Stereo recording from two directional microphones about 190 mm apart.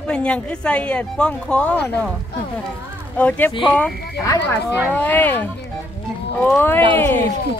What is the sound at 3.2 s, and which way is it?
Speech, 10° left (ahead or behind).